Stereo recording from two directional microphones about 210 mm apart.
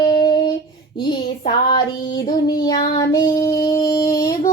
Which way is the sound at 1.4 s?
20° left (ahead or behind).